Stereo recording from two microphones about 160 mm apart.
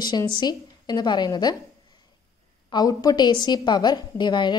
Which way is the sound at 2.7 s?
25° left (ahead or behind).